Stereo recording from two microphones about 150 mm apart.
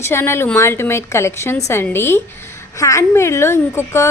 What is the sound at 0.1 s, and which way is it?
Speech, 15° left (ahead or behind).